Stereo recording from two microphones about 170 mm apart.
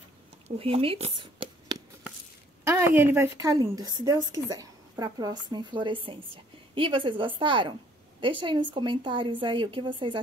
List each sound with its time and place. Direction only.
0.6 s speech: 35° right (ahead or behind)
2.6 s a sound: 15° right (ahead or behind)
3.0 s a woman's voice: 15° right (ahead or behind); by 10.2 s 30° right (ahead or behind)